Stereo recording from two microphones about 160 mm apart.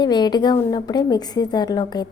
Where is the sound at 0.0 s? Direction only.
25° left (ahead or behind).